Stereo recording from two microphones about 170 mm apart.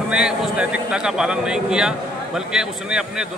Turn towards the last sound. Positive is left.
turn(degrees=-5)  # may be behind; listen again after turning